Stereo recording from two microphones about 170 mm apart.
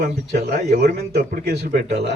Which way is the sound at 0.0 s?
50° right (ahead or behind).